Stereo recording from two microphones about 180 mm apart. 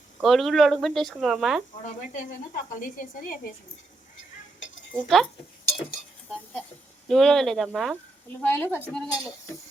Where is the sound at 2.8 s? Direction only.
50° left (ahead or behind).